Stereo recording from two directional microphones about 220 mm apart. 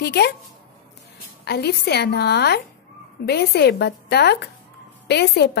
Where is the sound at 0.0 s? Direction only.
50° left (ahead or behind).